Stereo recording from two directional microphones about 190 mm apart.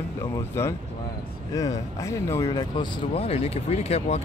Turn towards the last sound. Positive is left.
turn(degrees=35)  # may be behind; listen again after turning